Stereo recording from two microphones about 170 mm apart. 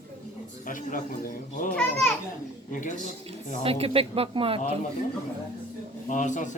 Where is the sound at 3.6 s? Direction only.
35° right (ahead or behind).